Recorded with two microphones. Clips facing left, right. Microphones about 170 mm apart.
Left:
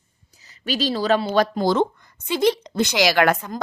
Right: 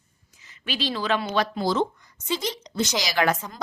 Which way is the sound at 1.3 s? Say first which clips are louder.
Left 5 dB; 45° left (ahead or behind).